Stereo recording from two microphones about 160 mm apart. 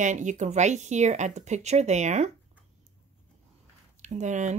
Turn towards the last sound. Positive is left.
turn(degrees=-50)  # may be behind; listen again after turning